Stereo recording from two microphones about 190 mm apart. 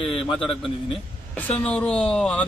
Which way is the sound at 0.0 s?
30° left (ahead or behind).